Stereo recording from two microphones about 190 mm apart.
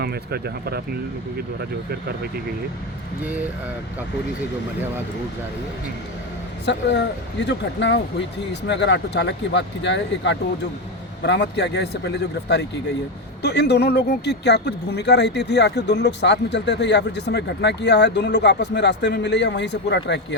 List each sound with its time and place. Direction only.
0.0 s speech: 55° right (ahead or behind)
6.7 s speech: 65° left (ahead or behind)